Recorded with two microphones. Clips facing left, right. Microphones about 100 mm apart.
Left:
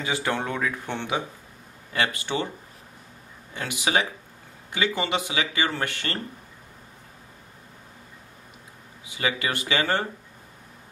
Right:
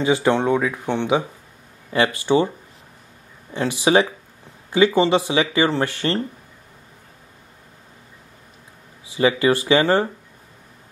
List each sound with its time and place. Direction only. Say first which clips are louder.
0.0 s speech: right 9 dB; 25° right (ahead or behind)
2.2 s speech: right 11 dB; 30° right (ahead or behind)
3.5 s speech: right 8 dB; 30° right (ahead or behind)
9.0 s speech: right 10 dB; 30° right (ahead or behind)